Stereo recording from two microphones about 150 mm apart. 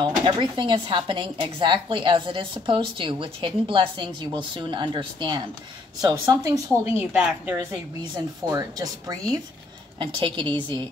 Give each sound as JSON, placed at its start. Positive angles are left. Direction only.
{"t": 0.0, "sound": "speech", "side_deg": -30}
{"t": 6.8, "sound": "a woman's voice", "side_deg": -10}
{"t": 8.5, "sound": "speech", "side_deg": -25}